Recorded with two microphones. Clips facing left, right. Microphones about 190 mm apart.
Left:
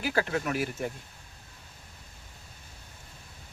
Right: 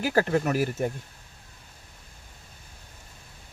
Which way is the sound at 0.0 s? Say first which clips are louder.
Right 5 dB; 40° right (ahead or behind).